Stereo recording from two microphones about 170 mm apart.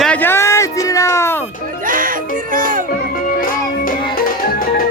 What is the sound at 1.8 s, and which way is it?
Music, 55° right (ahead or behind).